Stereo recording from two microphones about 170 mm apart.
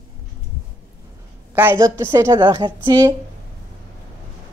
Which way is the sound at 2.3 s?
30° right (ahead or behind).